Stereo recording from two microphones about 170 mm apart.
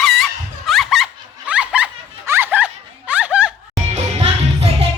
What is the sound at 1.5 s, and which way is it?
Snicker, 5° right (ahead or behind).